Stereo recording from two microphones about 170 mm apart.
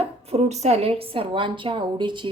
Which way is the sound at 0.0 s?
35° right (ahead or behind).